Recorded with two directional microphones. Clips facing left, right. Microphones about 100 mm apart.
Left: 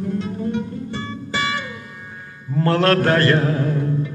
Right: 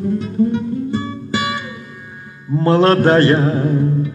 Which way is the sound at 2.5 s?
25° right (ahead or behind).